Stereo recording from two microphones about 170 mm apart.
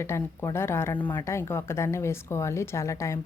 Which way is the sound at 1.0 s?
30° left (ahead or behind).